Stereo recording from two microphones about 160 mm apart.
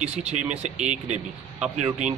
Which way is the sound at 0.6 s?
45° right (ahead or behind).